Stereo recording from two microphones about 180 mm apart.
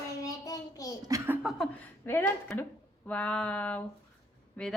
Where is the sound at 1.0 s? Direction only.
20° right (ahead or behind).